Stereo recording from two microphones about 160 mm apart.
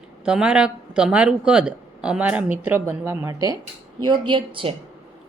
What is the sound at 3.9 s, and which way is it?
Speech, 30° right (ahead or behind).